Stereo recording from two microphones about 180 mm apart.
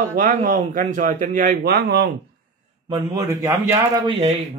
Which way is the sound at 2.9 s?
20° right (ahead or behind).